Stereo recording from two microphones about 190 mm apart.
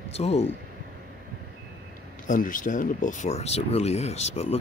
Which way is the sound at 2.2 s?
45° left (ahead or behind).